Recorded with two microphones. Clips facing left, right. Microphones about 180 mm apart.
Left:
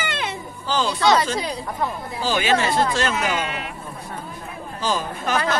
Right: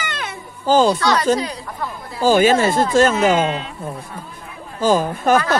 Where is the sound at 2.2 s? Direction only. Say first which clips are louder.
Right 7 dB; 45° right (ahead or behind).